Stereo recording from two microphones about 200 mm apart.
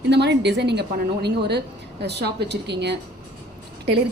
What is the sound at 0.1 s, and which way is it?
A woman's voice, 60° right (ahead or behind).